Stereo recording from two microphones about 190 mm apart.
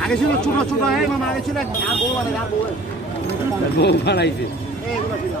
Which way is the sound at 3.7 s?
60° left (ahead or behind).